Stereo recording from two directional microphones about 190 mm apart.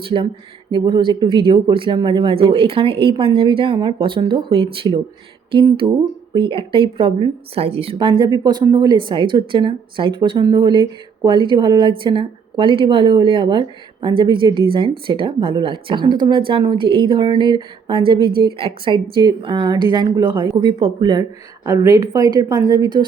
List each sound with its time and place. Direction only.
0.0 s a woman's voice: 25° right (ahead or behind)